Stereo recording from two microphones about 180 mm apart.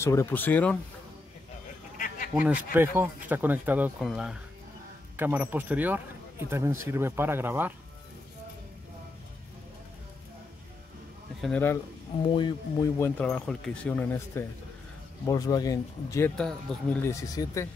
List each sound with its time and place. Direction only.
0.0 s speech: 15° left (ahead or behind)
2.3 s speech: 10° right (ahead or behind)
11.4 s speech: 10° left (ahead or behind)
12.2 s speech: 25° left (ahead or behind)
13.2 s speech: 5° left (ahead or behind); by 16.3 s 20° left (ahead or behind)
16.3 s speech: 5° left (ahead or behind)
17.1 s speech: 15° left (ahead or behind)